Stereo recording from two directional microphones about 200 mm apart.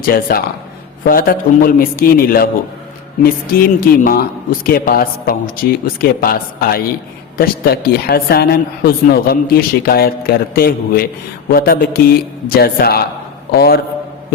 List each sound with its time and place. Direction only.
0.0 s a woman's voice: 45° left (ahead or behind)